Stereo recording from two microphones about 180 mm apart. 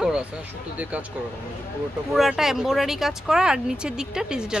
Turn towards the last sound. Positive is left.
turn(degrees=-5)  # may be behind; listen again after turning